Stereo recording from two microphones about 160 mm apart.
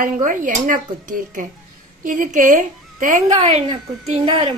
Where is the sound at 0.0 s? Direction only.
55° right (ahead or behind).